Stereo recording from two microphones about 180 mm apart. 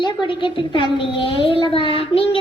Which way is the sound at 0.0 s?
25° left (ahead or behind).